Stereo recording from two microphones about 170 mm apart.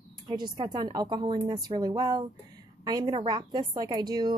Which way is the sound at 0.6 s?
25° right (ahead or behind).